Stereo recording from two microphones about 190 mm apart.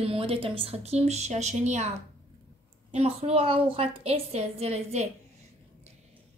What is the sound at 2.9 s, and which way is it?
A woman's voice, 35° right (ahead or behind).